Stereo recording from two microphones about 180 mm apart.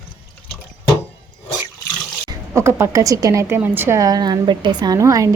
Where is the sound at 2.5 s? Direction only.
15° right (ahead or behind).